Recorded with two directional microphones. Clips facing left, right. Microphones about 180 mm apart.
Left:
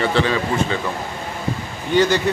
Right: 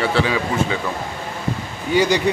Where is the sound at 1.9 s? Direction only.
10° right (ahead or behind).